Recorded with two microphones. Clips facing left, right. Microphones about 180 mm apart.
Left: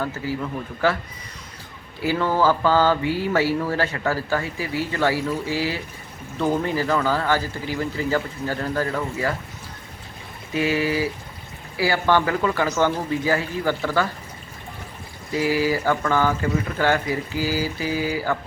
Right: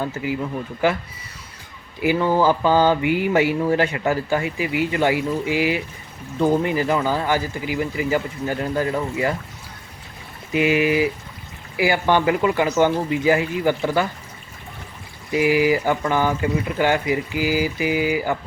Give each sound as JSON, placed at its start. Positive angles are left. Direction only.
{"t": 0.2, "sound": "mantra", "side_deg": -15}
{"t": 10.5, "sound": "mantra", "side_deg": -15}
{"t": 15.3, "sound": "mantra", "side_deg": -15}